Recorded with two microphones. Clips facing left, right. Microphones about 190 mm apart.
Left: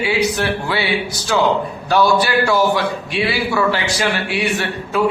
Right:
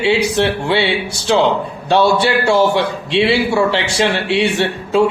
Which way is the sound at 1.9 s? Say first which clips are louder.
Right 2 dB; 25° right (ahead or behind).